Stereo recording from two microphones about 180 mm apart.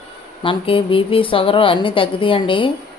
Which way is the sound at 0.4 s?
30° left (ahead or behind).